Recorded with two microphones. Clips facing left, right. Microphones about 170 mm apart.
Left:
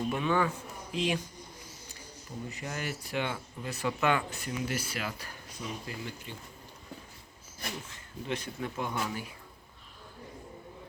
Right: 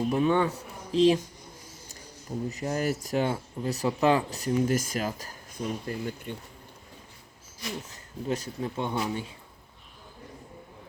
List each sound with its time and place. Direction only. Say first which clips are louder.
0.1 s speech: right 5 dB; 30° right (ahead or behind)
2.5 s speech: right 9 dB; 40° right (ahead or behind)
7.9 s speech: right 6 dB; 40° right (ahead or behind)